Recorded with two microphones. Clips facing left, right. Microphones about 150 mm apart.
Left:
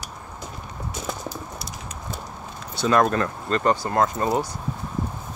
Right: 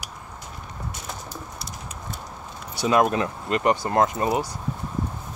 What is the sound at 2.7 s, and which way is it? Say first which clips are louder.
Speech: left 1 dB; 10° right (ahead or behind).